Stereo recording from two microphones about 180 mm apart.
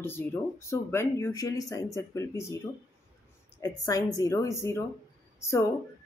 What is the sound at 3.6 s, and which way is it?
Speech, 20° left (ahead or behind).